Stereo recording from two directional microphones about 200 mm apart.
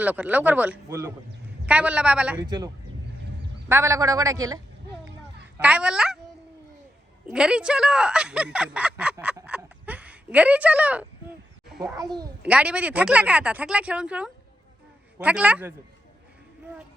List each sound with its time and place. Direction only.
0.0 s speech: 10° right (ahead or behind)
2.4 s a child's voice: 20° right (ahead or behind)
3.7 s speech: 15° right (ahead or behind)
5.5 s speech: 5° right (ahead or behind)
7.3 s speech: 5° right (ahead or behind)
9.2 s a sound: 5° right (ahead or behind)
11.8 s a child's voice: 20° right (ahead or behind)
12.4 s speech: 5° right (ahead or behind)